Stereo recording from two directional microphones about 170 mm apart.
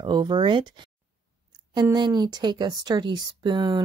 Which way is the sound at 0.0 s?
25° right (ahead or behind).